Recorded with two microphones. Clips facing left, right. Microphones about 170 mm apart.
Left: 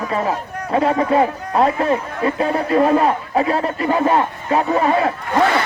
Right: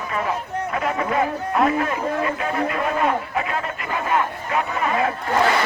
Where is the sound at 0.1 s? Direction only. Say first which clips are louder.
Left 1 dB; 30° left (ahead or behind).